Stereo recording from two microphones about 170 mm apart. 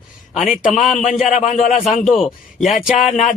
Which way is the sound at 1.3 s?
45° left (ahead or behind).